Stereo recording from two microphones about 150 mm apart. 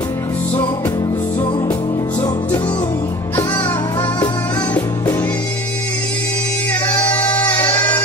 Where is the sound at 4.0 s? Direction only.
30° left (ahead or behind).